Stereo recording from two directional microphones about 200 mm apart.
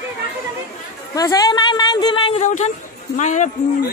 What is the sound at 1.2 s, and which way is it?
Speech, 20° left (ahead or behind).